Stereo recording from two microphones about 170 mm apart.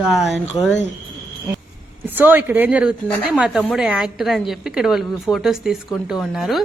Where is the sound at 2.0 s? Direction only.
10° right (ahead or behind).